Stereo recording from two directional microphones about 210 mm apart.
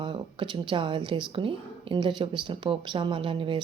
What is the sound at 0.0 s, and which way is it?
Speech, 25° right (ahead or behind).